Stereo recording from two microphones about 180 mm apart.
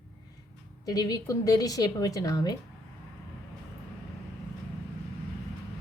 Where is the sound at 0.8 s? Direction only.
20° left (ahead or behind).